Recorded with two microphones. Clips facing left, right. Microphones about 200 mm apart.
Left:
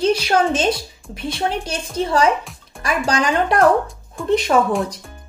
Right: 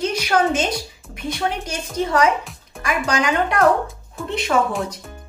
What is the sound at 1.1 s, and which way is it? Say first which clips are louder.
A woman's voice: left 2 dB; 30° left (ahead or behind).